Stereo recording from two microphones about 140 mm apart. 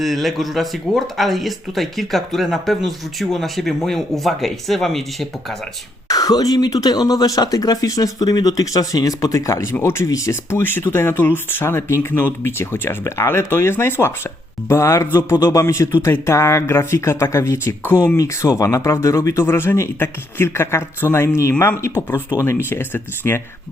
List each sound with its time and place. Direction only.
0.0 s speech: centre (ahead or behind)
6.1 s speech: 25° left (ahead or behind)